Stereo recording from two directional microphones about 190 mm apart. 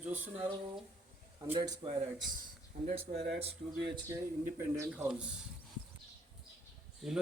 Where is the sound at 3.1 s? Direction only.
40° right (ahead or behind).